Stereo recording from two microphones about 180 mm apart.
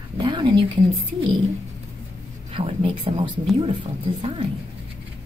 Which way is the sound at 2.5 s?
30° right (ahead or behind).